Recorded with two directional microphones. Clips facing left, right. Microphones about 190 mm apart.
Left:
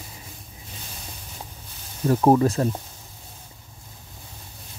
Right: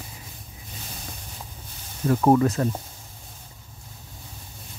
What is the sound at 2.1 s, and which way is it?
Speech, 25° left (ahead or behind).